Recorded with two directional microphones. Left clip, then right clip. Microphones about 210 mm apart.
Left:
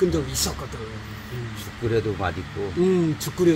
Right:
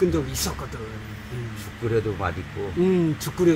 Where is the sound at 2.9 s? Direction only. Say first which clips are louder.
Left 1 dB; 10° left (ahead or behind).